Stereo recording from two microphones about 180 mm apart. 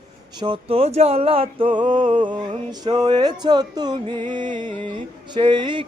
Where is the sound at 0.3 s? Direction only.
25° right (ahead or behind).